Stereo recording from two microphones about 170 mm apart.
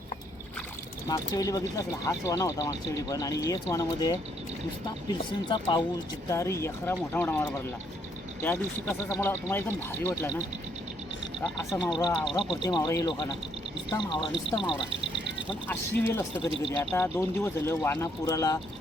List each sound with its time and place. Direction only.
1.0 s speech: 20° left (ahead or behind)
11.9 s speech: 25° left (ahead or behind)
15.6 s speech: 10° left (ahead or behind)